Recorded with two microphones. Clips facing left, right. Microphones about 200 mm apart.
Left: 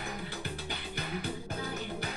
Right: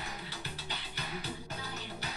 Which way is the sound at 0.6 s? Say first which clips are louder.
Left 4 dB; 50° left (ahead or behind).